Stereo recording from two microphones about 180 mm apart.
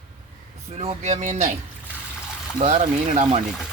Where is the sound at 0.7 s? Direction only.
35° right (ahead or behind).